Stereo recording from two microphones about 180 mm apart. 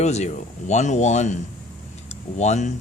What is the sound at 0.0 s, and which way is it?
Speech, 40° left (ahead or behind).